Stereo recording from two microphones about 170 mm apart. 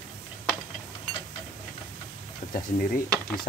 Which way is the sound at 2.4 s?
50° left (ahead or behind).